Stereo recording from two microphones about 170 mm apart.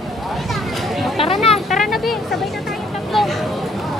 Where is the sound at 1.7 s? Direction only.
Centre (ahead or behind).